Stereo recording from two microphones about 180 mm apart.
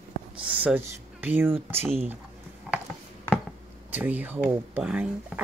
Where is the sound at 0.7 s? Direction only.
10° right (ahead or behind).